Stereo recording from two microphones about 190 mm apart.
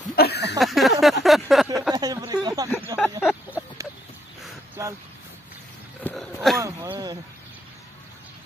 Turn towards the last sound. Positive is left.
turn(degrees=-20)  # may be behind; listen again after turning